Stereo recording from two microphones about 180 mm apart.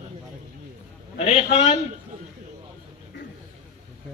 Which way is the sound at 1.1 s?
35° left (ahead or behind).